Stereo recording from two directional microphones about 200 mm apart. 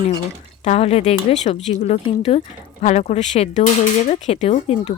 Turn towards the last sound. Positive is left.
turn(degrees=30)  # may be behind; listen again after turning